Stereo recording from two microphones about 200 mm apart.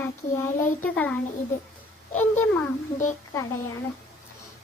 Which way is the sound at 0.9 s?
10° left (ahead or behind).